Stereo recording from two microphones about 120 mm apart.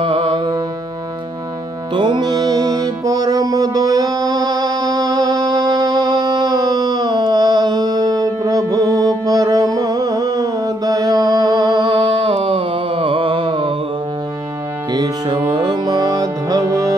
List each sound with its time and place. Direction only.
0.0 s music: 45° right (ahead or behind)
2.0 s music: 40° right (ahead or behind)
15.0 s music: 40° right (ahead or behind)